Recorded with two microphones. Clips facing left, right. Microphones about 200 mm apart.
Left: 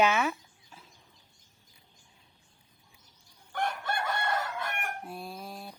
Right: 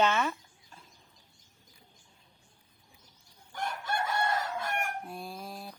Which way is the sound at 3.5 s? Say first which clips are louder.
Left 2 dB; 60° left (ahead or behind).